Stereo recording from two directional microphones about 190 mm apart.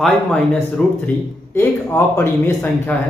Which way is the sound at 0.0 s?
Centre (ahead or behind).